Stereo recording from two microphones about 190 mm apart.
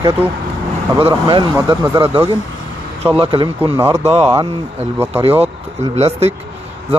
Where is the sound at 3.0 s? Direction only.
30° right (ahead or behind).